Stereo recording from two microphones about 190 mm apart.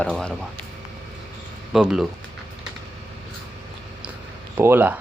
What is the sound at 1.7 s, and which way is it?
Speech, centre (ahead or behind).